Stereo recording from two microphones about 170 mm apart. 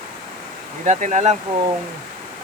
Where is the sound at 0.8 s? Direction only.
45° right (ahead or behind).